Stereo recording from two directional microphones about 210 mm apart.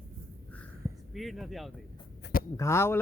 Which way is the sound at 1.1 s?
Centre (ahead or behind).